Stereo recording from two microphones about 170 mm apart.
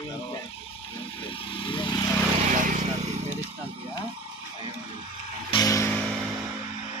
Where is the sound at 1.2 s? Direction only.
30° left (ahead or behind).